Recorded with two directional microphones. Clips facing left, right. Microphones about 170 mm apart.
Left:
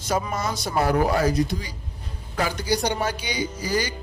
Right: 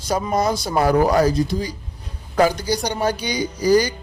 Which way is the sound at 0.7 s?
90° right.